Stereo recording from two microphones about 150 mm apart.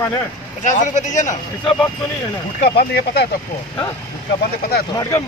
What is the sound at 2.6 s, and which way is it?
Speech, 90° left.